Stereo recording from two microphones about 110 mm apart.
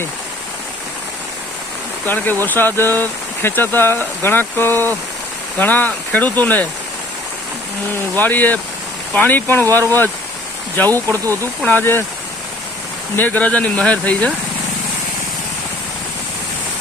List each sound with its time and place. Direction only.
2.0 s speech: 15° left (ahead or behind)
7.9 s speech: 15° left (ahead or behind)
10.8 s speech: 30° right (ahead or behind)
11.6 s speech: 15° left (ahead or behind)
13.1 s speech: 15° left (ahead or behind)